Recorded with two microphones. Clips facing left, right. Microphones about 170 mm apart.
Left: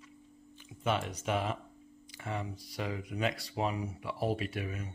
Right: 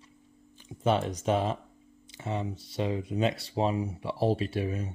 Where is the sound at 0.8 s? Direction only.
35° right (ahead or behind).